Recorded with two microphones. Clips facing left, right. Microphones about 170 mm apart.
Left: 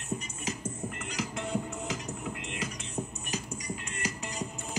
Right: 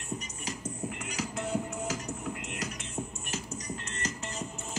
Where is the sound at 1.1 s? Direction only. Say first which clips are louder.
Even; centre (ahead or behind).